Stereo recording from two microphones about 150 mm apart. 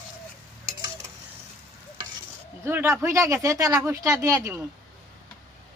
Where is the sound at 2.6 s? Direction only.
15° right (ahead or behind).